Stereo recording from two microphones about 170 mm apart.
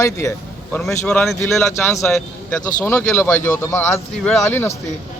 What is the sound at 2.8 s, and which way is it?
Speech, 10° left (ahead or behind).